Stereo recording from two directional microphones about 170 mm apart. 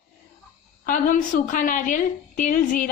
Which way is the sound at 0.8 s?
55° left (ahead or behind).